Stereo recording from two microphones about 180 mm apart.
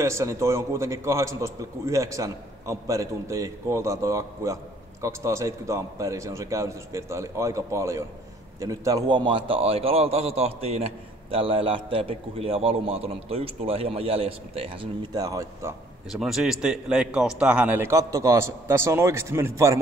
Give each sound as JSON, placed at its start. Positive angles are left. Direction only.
{"t": 0.0, "sound": "a man's voice", "side_deg": -15}
{"t": 16.1, "sound": "a man's voice", "side_deg": 0}